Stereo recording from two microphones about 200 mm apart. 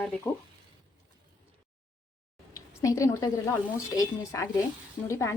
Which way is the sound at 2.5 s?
15° left (ahead or behind).